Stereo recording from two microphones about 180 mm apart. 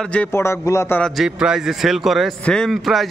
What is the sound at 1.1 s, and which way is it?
A man's voice, 5° right (ahead or behind).